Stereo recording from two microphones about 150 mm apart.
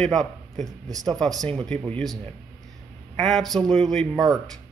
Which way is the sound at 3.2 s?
Centre (ahead or behind).